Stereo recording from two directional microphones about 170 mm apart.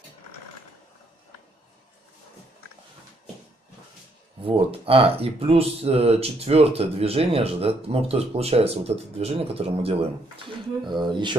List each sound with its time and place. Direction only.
4.5 s speech: 35° right (ahead or behind)